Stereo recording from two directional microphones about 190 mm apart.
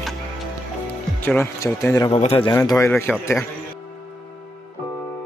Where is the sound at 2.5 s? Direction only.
15° left (ahead or behind).